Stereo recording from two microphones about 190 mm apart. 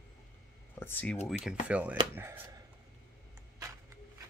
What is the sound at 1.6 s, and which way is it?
Speech, 5° right (ahead or behind).